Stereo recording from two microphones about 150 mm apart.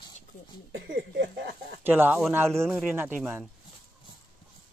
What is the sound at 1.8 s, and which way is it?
Speech, 15° right (ahead or behind).